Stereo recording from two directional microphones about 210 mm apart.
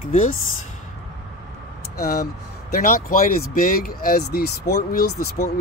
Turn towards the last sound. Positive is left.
turn(degrees=40)  # may be behind; listen again after turning